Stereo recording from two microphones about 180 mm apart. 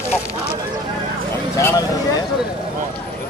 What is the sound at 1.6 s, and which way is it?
Speech, 15° left (ahead or behind).